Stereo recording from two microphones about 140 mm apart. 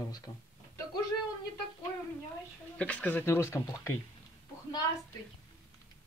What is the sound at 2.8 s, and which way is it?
A man's voice, 10° left (ahead or behind).